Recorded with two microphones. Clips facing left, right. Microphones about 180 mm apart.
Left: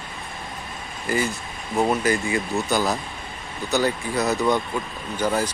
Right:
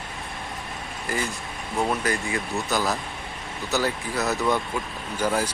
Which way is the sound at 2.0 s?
Centre (ahead or behind).